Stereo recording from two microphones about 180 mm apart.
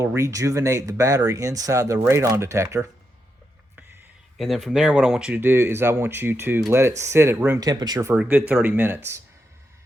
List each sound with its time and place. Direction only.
0.0 s speech: 15° right (ahead or behind)
4.4 s speech: centre (ahead or behind); by 8.1 s 20° right (ahead or behind)
8.1 s speech: 10° right (ahead or behind)